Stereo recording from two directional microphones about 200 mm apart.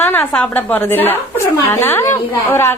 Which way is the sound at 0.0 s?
10° left (ahead or behind).